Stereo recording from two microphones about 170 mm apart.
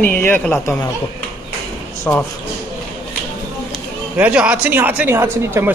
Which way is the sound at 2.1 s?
10° left (ahead or behind).